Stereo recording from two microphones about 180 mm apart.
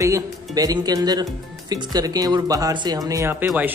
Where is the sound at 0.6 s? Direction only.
20° right (ahead or behind).